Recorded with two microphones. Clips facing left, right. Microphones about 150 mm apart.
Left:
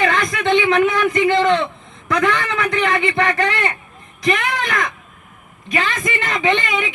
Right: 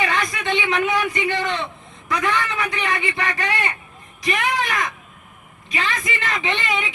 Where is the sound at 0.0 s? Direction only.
50° left (ahead or behind).